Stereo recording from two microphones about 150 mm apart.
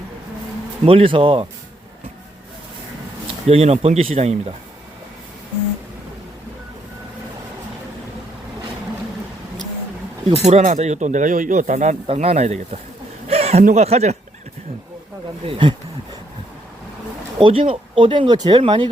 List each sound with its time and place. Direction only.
0.9 s speech: 35° right (ahead or behind)
3.4 s speech: 45° right (ahead or behind)
10.4 s speech: 50° right (ahead or behind)
12.0 s speech: 45° right (ahead or behind)
13.2 s chuckle: 45° right (ahead or behind)
13.7 s speech: 45° right (ahead or behind)
15.4 s speech: 35° right (ahead or behind)
17.4 s speech: 35° right (ahead or behind)